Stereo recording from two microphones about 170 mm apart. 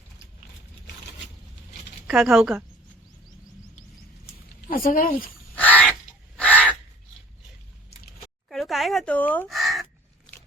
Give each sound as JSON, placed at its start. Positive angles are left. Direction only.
{"t": 2.0, "sound": "speech", "side_deg": -5}
{"t": 4.7, "sound": "speech", "side_deg": 55}
{"t": 5.5, "sound": "bird", "side_deg": 10}
{"t": 6.3, "sound": "crow", "side_deg": 10}
{"t": 8.4, "sound": "a sound", "side_deg": 0}
{"t": 9.6, "sound": "crow", "side_deg": 0}